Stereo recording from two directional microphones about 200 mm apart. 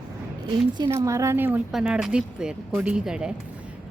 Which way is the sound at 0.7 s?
20° right (ahead or behind).